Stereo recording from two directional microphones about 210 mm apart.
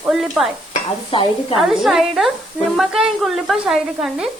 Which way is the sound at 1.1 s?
25° left (ahead or behind).